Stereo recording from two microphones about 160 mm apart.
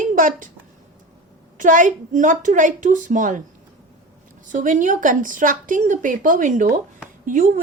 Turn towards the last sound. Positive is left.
turn(degrees=-55)  # may be behind; listen again after turning